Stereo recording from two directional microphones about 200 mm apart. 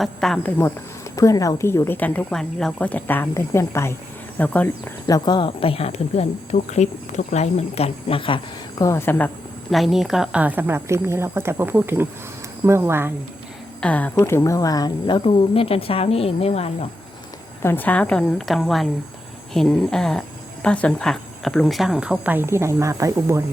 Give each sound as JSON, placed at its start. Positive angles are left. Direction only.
{"t": 0.0, "sound": "speech", "side_deg": 0}
{"t": 1.1, "sound": "a woman's voice", "side_deg": 15}
{"t": 5.0, "sound": "speech", "side_deg": 20}
{"t": 8.8, "sound": "a woman's voice", "side_deg": 15}
{"t": 13.8, "sound": "speech", "side_deg": 5}
{"t": 17.6, "sound": "speech", "side_deg": 10}